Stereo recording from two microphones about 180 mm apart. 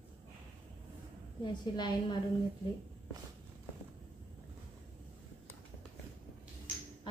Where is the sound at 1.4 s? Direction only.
25° left (ahead or behind).